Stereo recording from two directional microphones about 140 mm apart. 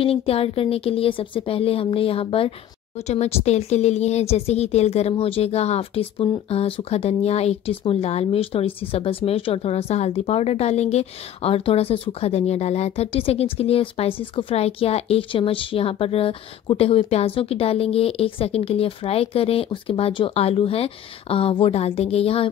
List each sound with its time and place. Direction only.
0.0 s speech: 45° left (ahead or behind)